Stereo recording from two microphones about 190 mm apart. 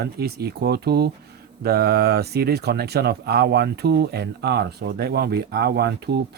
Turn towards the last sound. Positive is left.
turn(degrees=-60)  # may be behind; listen again after turning